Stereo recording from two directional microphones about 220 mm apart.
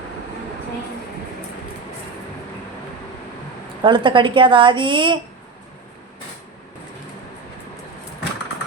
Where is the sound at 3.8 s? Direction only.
20° right (ahead or behind).